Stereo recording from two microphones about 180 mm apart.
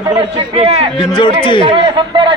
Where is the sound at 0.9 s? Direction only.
25° left (ahead or behind).